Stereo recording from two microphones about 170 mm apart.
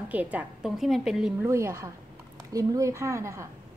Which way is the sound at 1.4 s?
15° right (ahead or behind).